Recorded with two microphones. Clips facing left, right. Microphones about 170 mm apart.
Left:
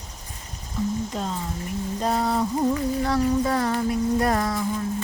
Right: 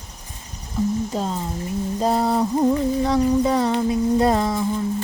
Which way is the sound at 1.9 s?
30° right (ahead or behind).